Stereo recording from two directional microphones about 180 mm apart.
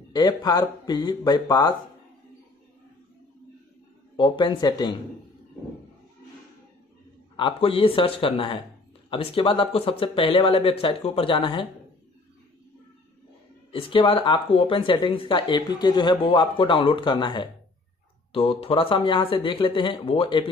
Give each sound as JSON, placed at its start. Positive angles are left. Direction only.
{"t": 0.1, "sound": "speech", "side_deg": 25}
{"t": 4.2, "sound": "speech", "side_deg": 25}
{"t": 7.3, "sound": "speech", "side_deg": 30}
{"t": 13.7, "sound": "speech", "side_deg": 30}